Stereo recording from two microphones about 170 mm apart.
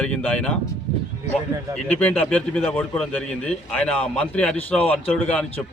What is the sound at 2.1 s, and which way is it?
A man's voice, 10° left (ahead or behind).